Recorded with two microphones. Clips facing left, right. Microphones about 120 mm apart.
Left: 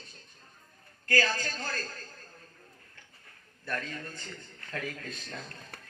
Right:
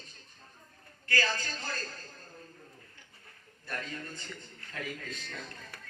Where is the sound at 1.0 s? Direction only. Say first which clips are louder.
Left 3 dB; 45° left (ahead or behind).